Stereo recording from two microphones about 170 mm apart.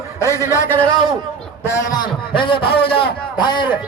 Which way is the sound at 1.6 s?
20° left (ahead or behind).